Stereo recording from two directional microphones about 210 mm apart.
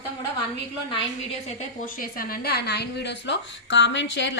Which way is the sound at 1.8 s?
40° left (ahead or behind).